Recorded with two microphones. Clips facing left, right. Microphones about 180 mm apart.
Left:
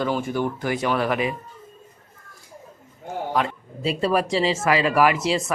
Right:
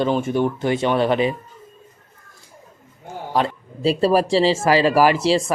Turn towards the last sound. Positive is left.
turn(degrees=-30)  # may be behind; listen again after turning